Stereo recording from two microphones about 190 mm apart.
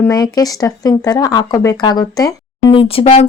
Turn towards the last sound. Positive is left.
turn(degrees=30)  # may be behind; listen again after turning